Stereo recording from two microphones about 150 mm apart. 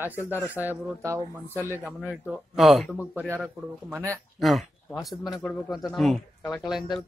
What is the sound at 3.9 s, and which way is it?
Speech, 20° right (ahead or behind).